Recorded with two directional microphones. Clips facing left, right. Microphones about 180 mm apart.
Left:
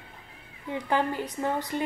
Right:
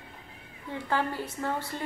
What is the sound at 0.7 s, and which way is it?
A woman's voice, 15° left (ahead or behind).